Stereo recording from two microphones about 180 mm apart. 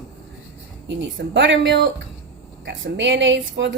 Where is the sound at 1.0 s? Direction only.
85° right.